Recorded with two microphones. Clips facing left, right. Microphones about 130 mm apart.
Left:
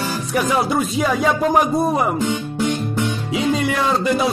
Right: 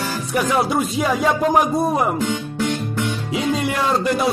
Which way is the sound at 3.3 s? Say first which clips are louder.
Left 2 dB; centre (ahead or behind).